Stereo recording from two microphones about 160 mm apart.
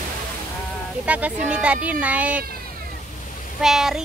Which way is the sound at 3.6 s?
5° right (ahead or behind).